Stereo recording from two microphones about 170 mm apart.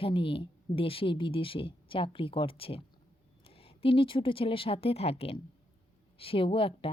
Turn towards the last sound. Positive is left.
turn(degrees=30)  # may be behind; listen again after turning